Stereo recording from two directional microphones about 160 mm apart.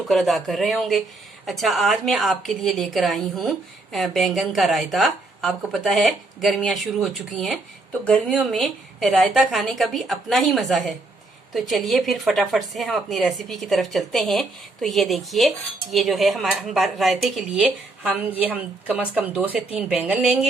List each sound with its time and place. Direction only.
0.1 s a woman's voice: centre (ahead or behind)